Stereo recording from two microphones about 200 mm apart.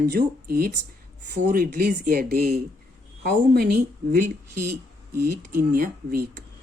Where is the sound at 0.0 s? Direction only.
50° right (ahead or behind).